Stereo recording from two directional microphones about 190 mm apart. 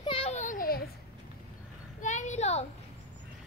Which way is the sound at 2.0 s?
40° left (ahead or behind).